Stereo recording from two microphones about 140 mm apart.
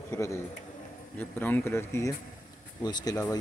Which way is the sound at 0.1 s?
20° left (ahead or behind).